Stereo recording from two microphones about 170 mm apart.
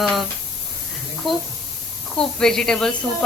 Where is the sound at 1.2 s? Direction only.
Centre (ahead or behind).